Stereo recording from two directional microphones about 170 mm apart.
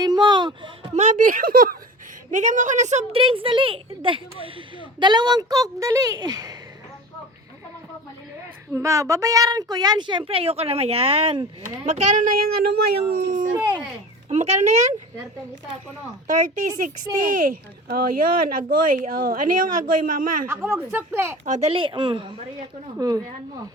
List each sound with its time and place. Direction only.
0.0 s a sound: 25° right (ahead or behind)
0.9 s speech: 45° right (ahead or behind)
2.3 s a woman's voice: 45° right (ahead or behind); by 6.6 s 20° right (ahead or behind)
8.7 s a child's voice: 20° right (ahead or behind); by 11.4 s 35° right (ahead or behind)
11.9 s speech: 45° right (ahead or behind)
14.3 s a woman's voice: 40° right (ahead or behind)
17.8 s speech: 60° right (ahead or behind)
20.5 s speech: 15° right (ahead or behind)
21.4 s speech: 45° right (ahead or behind)
21.7 s a child's voice: 30° right (ahead or behind)